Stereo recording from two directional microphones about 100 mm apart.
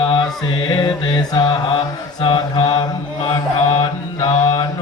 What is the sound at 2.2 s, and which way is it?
Mantra, 45° left (ahead or behind).